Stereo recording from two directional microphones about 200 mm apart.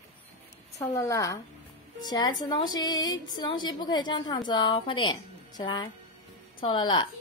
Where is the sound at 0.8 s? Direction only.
15° left (ahead or behind).